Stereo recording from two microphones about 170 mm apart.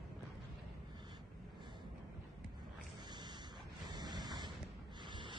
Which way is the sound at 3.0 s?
25° right (ahead or behind).